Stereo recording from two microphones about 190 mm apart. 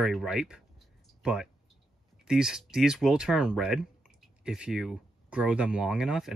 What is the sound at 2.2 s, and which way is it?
Speech, 5° right (ahead or behind).